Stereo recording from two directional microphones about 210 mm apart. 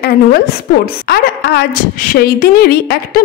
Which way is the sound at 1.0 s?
50° left (ahead or behind).